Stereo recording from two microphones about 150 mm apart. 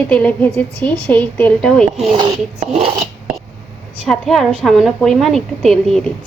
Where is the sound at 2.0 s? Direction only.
35° right (ahead or behind).